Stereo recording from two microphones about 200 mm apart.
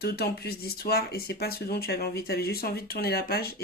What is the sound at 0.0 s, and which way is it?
Speech, 50° left (ahead or behind).